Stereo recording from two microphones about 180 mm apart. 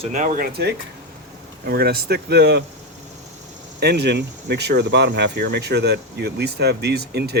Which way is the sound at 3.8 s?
65° right (ahead or behind).